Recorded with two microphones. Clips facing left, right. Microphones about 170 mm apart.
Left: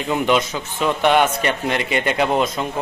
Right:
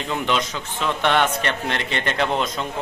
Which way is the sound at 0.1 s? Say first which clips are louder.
Left 5 dB; 10° left (ahead or behind).